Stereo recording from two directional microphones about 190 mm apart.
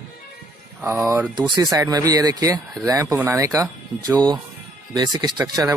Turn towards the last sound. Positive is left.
turn(degrees=-20)  # may be behind; listen again after turning